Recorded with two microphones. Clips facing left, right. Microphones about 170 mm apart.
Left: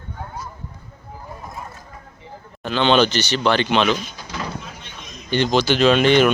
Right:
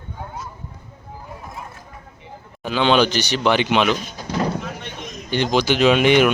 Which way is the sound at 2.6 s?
5° right (ahead or behind).